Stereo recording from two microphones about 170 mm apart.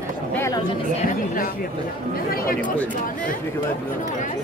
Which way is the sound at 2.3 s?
60° left (ahead or behind).